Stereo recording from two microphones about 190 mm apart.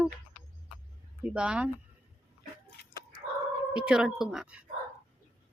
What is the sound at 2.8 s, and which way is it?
Chicken, 60° left (ahead or behind).